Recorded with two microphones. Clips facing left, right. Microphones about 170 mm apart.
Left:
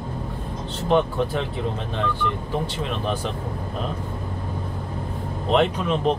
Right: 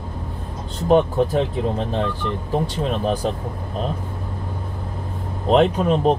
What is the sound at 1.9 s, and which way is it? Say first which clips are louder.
Speech: right 2 dB; 35° right (ahead or behind).